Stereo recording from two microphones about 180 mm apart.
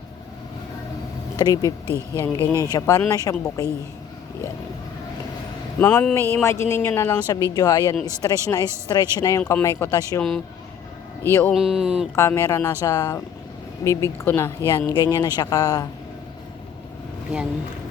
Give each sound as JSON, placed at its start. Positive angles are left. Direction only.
{"t": 1.4, "sound": "speech", "side_deg": 20}
{"t": 5.8, "sound": "speech", "side_deg": 15}
{"t": 10.2, "sound": "speech", "side_deg": 0}
{"t": 11.5, "sound": "speech", "side_deg": -5}
{"t": 12.1, "sound": "speech", "side_deg": 15}